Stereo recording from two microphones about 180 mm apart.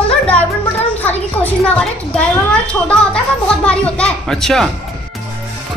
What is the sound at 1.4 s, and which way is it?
Speech, 5° left (ahead or behind).